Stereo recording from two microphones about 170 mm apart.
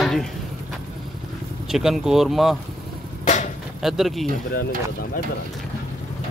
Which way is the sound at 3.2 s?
45° left (ahead or behind).